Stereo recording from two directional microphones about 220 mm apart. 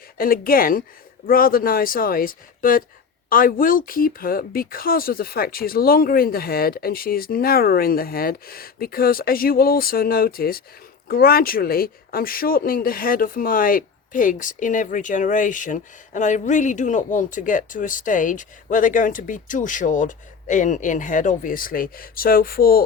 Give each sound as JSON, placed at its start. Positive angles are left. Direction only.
{"t": 0.2, "sound": "speech", "side_deg": 40}